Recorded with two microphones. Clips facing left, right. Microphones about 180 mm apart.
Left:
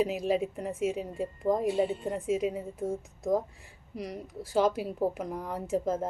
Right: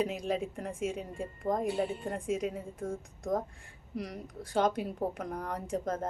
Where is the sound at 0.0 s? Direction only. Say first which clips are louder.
Left 4 dB; 5° left (ahead or behind).